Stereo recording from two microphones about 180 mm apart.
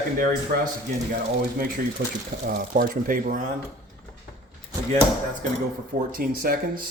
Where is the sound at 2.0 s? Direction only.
60° right (ahead or behind).